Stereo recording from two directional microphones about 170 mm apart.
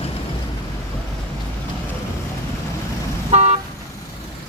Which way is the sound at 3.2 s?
40° right (ahead or behind).